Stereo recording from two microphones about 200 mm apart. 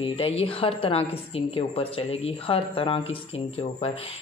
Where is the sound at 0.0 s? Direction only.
25° left (ahead or behind).